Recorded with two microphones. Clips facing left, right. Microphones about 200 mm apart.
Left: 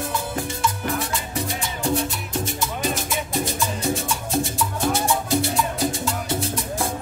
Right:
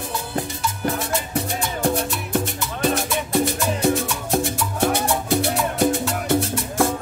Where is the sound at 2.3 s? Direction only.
60° right (ahead or behind).